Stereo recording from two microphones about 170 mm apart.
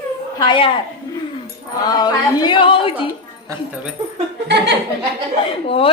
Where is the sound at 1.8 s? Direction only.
25° left (ahead or behind).